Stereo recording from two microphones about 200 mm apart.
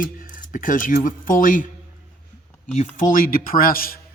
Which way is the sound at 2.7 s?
40° left (ahead or behind).